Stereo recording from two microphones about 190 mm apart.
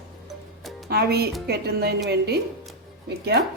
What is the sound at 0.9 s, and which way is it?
A woman's voice, 55° right (ahead or behind).